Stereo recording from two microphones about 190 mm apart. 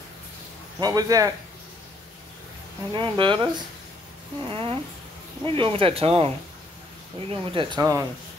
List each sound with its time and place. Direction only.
0.7 s speech: 20° right (ahead or behind)
2.9 s speech: 25° right (ahead or behind)